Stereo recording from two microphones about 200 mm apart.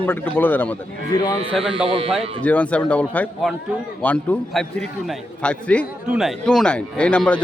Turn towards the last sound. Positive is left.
turn(degrees=5)  # may be behind; listen again after turning